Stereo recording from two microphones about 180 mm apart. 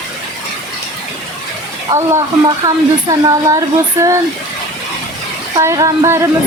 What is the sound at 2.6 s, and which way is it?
Speech, 20° right (ahead or behind).